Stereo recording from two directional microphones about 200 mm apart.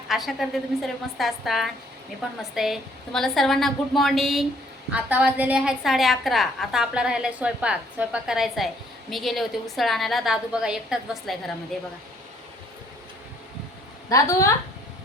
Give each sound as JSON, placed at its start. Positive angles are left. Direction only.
{"t": 0.1, "sound": "a woman's voice", "side_deg": 0}
{"t": 14.1, "sound": "a woman's voice", "side_deg": 15}